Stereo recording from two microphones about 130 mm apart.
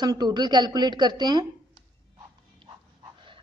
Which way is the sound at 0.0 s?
30° right (ahead or behind).